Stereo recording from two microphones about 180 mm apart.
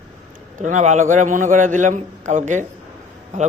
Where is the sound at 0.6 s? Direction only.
40° right (ahead or behind).